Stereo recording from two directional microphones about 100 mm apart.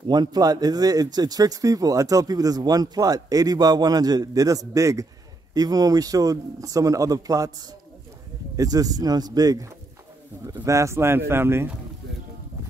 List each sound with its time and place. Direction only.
0.1 s speech: 45° right (ahead or behind); by 11.7 s 25° right (ahead or behind)